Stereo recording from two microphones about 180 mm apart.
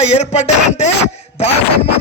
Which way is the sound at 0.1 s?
40° left (ahead or behind).